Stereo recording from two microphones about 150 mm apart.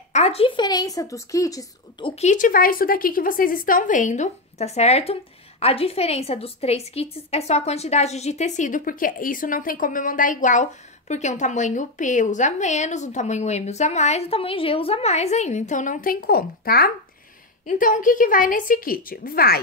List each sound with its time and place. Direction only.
0.1 s speech: 45° left (ahead or behind)
0.6 s a woman's voice: 25° left (ahead or behind)
2.0 s a woman's voice: 50° left (ahead or behind); by 16.9 s 90° left
17.6 s a woman's voice: 60° left (ahead or behind); by 19.6 s 85° left